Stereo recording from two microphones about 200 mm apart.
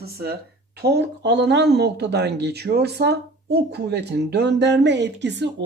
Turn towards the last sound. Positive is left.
turn(degrees=-60)  # may be behind; listen again after turning